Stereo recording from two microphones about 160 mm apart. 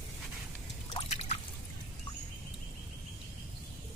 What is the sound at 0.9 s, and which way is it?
Drip, 40° left (ahead or behind).